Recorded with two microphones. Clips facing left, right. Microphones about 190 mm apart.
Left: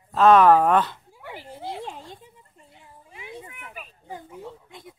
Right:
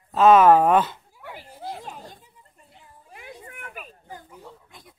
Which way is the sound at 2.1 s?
25° left (ahead or behind).